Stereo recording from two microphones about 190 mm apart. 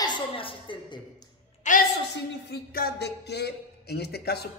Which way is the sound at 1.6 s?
40° left (ahead or behind).